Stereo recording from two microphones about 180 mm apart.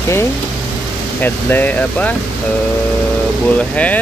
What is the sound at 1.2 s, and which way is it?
Speech, 10° left (ahead or behind).